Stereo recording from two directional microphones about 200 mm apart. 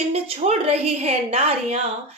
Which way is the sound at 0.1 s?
30° right (ahead or behind).